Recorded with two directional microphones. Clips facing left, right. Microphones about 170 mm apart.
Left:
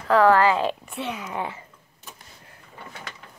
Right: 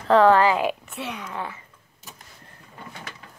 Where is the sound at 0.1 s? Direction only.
20° right (ahead or behind).